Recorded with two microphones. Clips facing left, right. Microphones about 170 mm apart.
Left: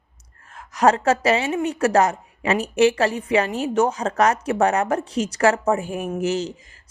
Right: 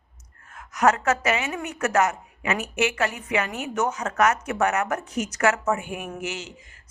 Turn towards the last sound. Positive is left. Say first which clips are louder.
# left 10 dB
turn(degrees=35)  # may be behind; listen again after turning